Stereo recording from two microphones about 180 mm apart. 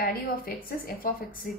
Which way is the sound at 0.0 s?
55° left (ahead or behind).